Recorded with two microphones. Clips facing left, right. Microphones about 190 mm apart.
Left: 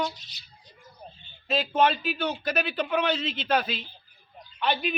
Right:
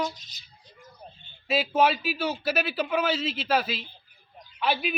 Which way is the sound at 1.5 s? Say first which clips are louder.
Right 1 dB; 5° right (ahead or behind).